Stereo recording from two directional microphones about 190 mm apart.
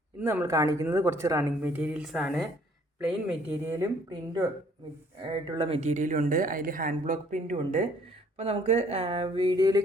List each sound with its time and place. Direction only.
0.2 s a woman's voice: 10° right (ahead or behind)